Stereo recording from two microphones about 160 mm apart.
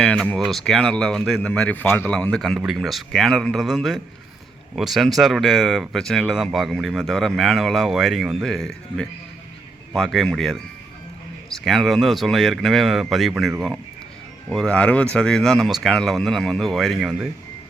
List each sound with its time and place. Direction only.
0.0 s speech: 5° left (ahead or behind)